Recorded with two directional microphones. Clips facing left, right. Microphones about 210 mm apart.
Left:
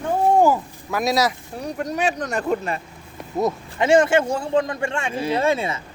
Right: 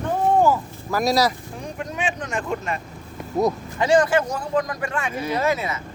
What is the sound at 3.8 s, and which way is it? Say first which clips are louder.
Speech: left 2 dB; 25° left (ahead or behind).